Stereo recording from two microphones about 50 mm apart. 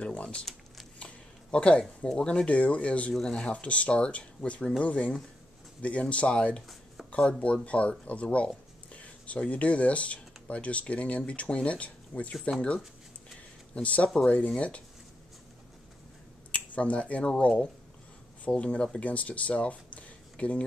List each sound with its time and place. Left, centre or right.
0.0 s speech: left
0.9 s a sound: left
2.0 s speech: centre
3.1 s speech: centre
13.8 s speech: left
16.5 s speech: left